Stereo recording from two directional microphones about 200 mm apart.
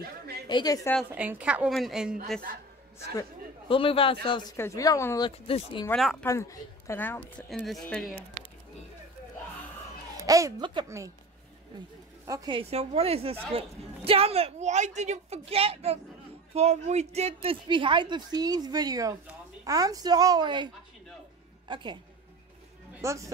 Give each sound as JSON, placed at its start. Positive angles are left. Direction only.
{"t": 0.5, "sound": "speech", "side_deg": 20}
{"t": 0.9, "sound": "a woman's voice", "side_deg": -5}
{"t": 3.2, "sound": "speech", "side_deg": 25}
{"t": 4.6, "sound": "a woman's voice", "side_deg": 15}
{"t": 5.3, "sound": "speech", "side_deg": 25}
{"t": 5.9, "sound": "a woman's voice", "side_deg": 0}
{"t": 6.2, "sound": "a woman's voice", "side_deg": 15}
{"t": 10.2, "sound": "speech", "side_deg": -15}
{"t": 12.3, "sound": "a woman's voice", "side_deg": -20}
{"t": 23.0, "sound": "speech", "side_deg": -15}